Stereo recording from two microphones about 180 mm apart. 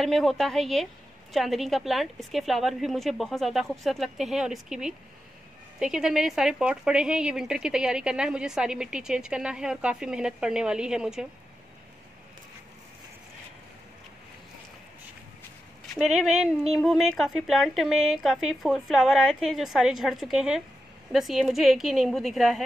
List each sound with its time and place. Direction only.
0.0 s a woman's voice: centre (ahead or behind)
15.9 s a woman's voice: centre (ahead or behind)